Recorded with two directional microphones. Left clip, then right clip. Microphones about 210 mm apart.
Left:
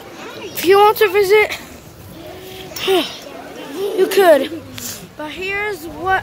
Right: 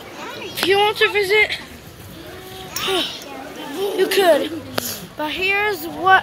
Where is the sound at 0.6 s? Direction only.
35° left (ahead or behind).